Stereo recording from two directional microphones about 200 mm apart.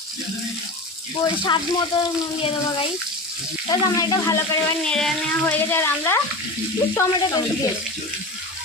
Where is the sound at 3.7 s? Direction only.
15° left (ahead or behind).